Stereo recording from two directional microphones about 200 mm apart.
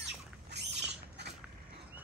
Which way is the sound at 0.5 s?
60° right (ahead or behind).